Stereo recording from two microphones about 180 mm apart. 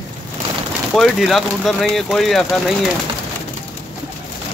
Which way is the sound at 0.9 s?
Centre (ahead or behind).